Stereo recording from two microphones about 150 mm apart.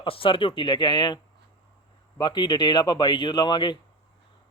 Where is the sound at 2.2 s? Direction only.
30° left (ahead or behind).